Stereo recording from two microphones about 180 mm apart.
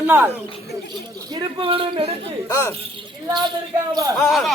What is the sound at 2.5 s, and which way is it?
Speech, 15° left (ahead or behind).